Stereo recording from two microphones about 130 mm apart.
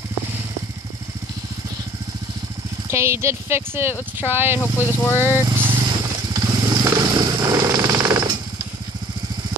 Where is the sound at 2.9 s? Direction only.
20° right (ahead or behind).